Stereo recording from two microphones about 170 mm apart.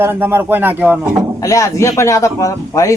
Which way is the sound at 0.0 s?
15° right (ahead or behind).